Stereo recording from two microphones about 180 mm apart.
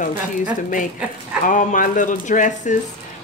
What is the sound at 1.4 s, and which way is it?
Speech, 45° left (ahead or behind).